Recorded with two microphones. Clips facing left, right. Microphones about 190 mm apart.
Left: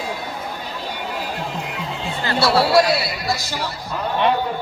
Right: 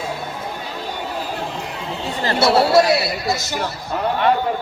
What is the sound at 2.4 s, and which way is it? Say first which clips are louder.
Speech: right 2 dB; 20° right (ahead or behind).